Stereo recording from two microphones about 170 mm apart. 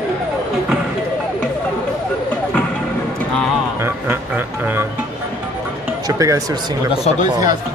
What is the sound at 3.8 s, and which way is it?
Music, 10° right (ahead or behind).